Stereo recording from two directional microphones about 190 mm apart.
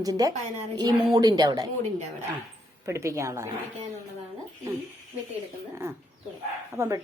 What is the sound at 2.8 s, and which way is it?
Speech, 15° right (ahead or behind).